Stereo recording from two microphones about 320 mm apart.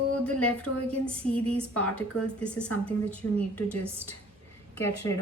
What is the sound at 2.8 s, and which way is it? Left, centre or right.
A woman's voice, centre.